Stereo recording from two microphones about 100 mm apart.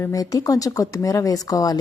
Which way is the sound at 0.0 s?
35° left (ahead or behind).